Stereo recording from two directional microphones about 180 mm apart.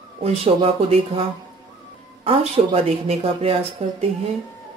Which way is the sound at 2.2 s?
35° right (ahead or behind).